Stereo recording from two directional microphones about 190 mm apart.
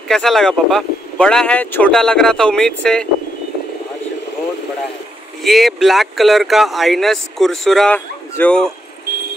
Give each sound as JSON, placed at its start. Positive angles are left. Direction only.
{"t": 0.1, "sound": "speech", "side_deg": 0}
{"t": 5.4, "sound": "speech", "side_deg": 0}